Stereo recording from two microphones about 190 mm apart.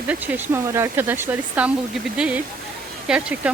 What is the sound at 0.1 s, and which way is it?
Speech, 10° right (ahead or behind).